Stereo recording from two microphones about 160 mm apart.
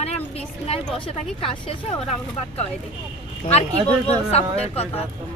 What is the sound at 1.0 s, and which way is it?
Speech, 35° left (ahead or behind).